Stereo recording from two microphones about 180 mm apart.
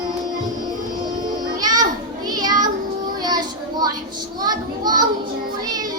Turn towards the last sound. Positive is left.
turn(degrees=-20)  # may be behind; listen again after turning